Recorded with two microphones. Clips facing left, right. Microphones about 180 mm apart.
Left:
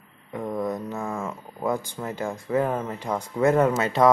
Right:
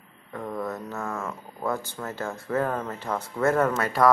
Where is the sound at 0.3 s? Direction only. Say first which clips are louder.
Left 4 dB; 15° left (ahead or behind).